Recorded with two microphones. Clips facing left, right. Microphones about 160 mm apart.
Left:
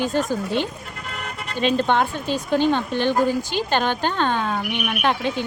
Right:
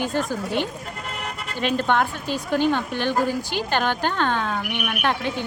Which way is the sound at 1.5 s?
20° left (ahead or behind).